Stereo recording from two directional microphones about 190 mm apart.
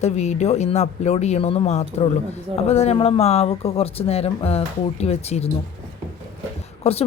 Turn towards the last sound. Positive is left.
turn(degrees=30)  # may be behind; listen again after turning